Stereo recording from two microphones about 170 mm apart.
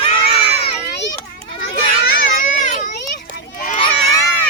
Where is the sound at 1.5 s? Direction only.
60° left (ahead or behind).